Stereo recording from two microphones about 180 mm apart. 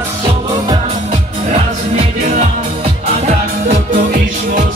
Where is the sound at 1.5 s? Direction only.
35° right (ahead or behind).